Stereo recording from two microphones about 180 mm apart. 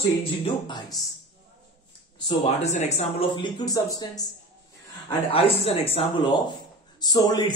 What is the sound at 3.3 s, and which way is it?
Speech, 25° left (ahead or behind).